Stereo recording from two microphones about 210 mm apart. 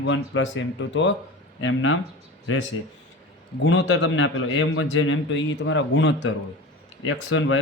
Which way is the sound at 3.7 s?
60° left (ahead or behind).